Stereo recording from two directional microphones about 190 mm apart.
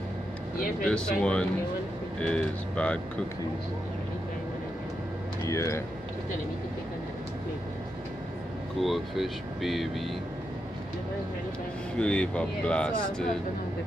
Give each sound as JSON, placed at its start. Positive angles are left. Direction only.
{"t": 0.8, "sound": "speech", "side_deg": 5}
{"t": 5.5, "sound": "speech", "side_deg": 15}
{"t": 8.7, "sound": "speech", "side_deg": 0}
{"t": 12.0, "sound": "speech", "side_deg": 5}